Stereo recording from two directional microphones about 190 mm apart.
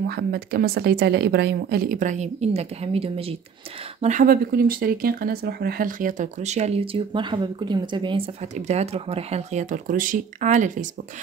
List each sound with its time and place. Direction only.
0.0 s speech: 55° right (ahead or behind); by 3.3 s 30° right (ahead or behind)
4.0 s speech: 45° right (ahead or behind); by 8.2 s 25° right (ahead or behind)
8.5 s speech: 35° right (ahead or behind)